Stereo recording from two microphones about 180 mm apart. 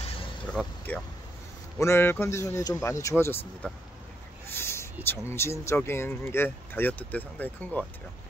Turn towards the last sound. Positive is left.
turn(degrees=10)  # may be behind; listen again after turning